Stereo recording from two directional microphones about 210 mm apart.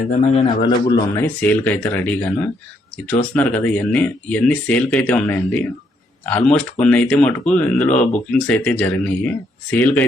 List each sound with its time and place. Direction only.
0.2 s a man's voice: 30° left (ahead or behind)
0.9 s speech: 15° left (ahead or behind)